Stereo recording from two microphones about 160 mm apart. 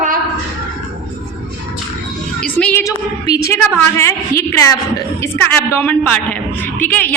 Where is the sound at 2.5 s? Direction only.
10° left (ahead or behind).